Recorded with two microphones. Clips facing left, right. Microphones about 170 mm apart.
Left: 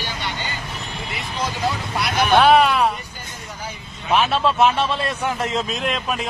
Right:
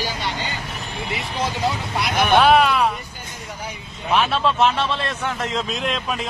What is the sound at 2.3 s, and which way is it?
Speech, centre (ahead or behind).